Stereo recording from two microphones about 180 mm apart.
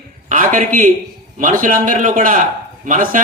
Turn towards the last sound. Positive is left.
turn(degrees=-45)  # may be behind; listen again after turning